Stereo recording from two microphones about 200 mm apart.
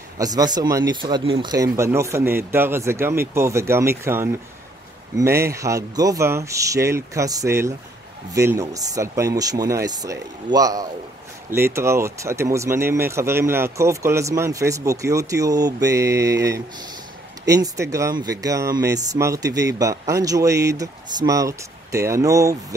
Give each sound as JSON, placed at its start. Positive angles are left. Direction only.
{"t": 0.2, "sound": "speech", "side_deg": -20}